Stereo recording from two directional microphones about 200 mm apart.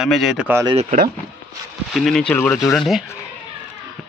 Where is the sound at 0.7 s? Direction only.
40° right (ahead or behind).